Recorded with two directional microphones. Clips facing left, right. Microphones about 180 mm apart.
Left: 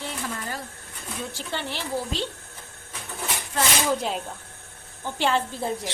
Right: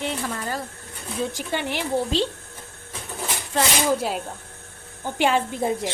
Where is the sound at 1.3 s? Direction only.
15° right (ahead or behind).